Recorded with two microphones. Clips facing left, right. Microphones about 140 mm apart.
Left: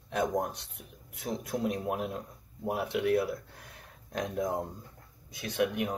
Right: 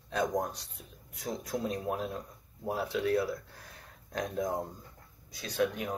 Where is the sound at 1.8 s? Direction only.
15° left (ahead or behind).